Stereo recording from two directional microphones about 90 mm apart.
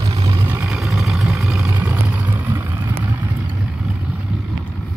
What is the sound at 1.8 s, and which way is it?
Vehicle, 15° right (ahead or behind).